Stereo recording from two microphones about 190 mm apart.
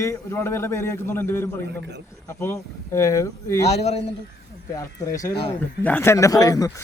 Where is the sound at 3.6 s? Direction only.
35° left (ahead or behind).